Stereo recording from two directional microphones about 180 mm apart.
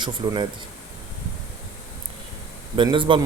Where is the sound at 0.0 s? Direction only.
25° right (ahead or behind).